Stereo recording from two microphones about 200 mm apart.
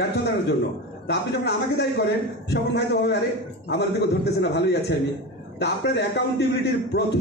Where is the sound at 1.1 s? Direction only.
55° left (ahead or behind).